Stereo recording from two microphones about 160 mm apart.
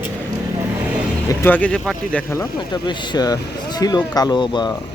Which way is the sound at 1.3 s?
15° left (ahead or behind).